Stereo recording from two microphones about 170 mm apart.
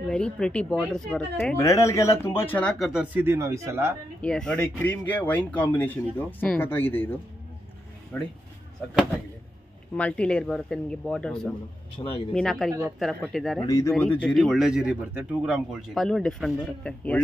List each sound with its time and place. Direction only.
0.1 s speech: 5° left (ahead or behind)
1.6 s speech: 20° left (ahead or behind)
2.9 s speech: 5° right (ahead or behind)
4.2 s speech: 5° left (ahead or behind)
9.9 s speech: 5° left (ahead or behind)
12.0 s speech: 25° left (ahead or behind)
12.4 s speech: centre (ahead or behind)
13.7 s speech: 20° left (ahead or behind)
13.9 s speech: 10° left (ahead or behind)